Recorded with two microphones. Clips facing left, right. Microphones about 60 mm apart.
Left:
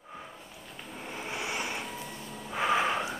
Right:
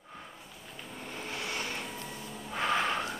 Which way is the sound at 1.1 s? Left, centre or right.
Centre.